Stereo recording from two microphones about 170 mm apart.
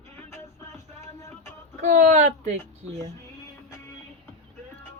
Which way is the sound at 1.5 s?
45° right (ahead or behind).